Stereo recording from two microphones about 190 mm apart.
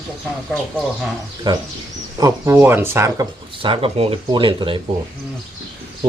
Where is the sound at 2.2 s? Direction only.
15° right (ahead or behind).